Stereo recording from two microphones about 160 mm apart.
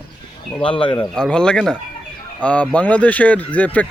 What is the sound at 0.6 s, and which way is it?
Speech, 30° left (ahead or behind).